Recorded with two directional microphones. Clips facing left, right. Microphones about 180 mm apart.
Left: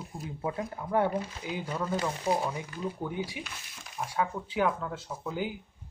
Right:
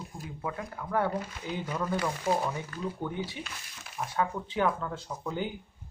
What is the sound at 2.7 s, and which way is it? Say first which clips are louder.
Speech: even; 15° left (ahead or behind).